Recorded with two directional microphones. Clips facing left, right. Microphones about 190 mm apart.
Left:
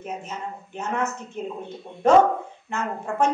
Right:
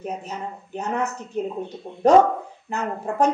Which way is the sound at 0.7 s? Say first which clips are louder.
Right 1 dB; 35° right (ahead or behind).